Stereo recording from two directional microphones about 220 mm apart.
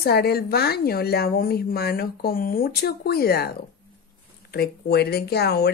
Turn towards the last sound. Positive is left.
turn(degrees=45)  # may be behind; listen again after turning